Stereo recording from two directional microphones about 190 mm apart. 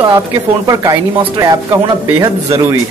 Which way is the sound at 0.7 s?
20° right (ahead or behind).